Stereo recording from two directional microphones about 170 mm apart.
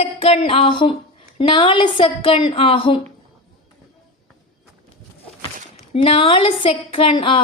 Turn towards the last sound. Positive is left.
turn(degrees=30)  # may be behind; listen again after turning